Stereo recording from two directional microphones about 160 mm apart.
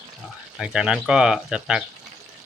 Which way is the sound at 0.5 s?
5° right (ahead or behind).